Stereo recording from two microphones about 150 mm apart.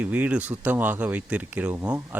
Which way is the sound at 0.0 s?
10° right (ahead or behind).